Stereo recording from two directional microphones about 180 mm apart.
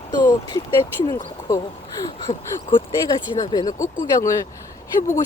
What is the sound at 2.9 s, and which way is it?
Speech, 20° left (ahead or behind).